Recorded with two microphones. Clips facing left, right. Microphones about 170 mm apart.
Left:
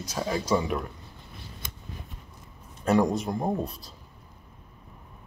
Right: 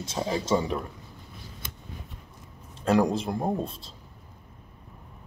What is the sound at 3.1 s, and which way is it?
Speech, 30° right (ahead or behind).